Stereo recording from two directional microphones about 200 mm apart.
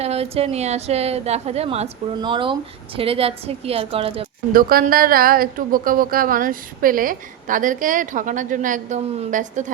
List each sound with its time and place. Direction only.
0.0 s a woman's voice: 30° right (ahead or behind)
4.5 s a woman's voice: 45° right (ahead or behind)